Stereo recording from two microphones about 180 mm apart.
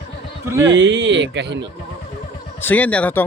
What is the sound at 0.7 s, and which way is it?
Speech, 85° right.